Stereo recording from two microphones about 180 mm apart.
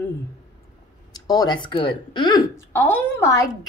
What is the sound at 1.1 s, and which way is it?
Speech, 20° left (ahead or behind).